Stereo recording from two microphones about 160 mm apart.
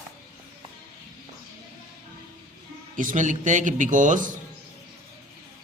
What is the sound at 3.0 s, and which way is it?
Speech, 55° right (ahead or behind).